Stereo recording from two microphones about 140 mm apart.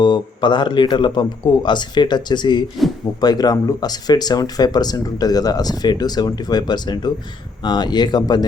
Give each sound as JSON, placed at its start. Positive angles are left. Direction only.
{"t": 0.0, "sound": "a man's voice", "side_deg": 30}